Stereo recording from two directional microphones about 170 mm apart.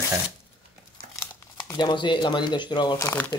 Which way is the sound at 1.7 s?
25° left (ahead or behind).